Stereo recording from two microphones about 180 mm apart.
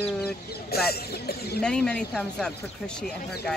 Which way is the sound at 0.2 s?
60° left (ahead or behind).